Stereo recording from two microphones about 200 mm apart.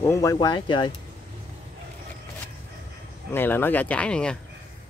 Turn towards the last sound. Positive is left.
turn(degrees=5)  # may be behind; listen again after turning